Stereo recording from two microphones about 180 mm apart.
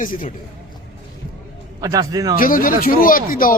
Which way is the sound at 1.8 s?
20° right (ahead or behind).